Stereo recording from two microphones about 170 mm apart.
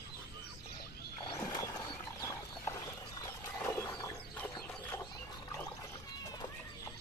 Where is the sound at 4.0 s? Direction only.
20° left (ahead or behind).